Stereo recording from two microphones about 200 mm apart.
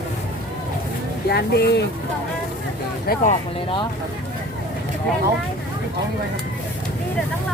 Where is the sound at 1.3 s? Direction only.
55° left (ahead or behind).